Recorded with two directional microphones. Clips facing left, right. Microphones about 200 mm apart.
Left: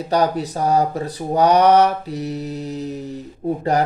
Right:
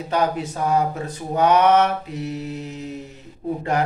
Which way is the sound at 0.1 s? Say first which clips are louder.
Left 3 dB; 35° left (ahead or behind).